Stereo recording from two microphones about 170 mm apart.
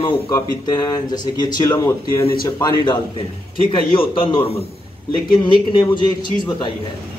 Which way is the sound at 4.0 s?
30° left (ahead or behind).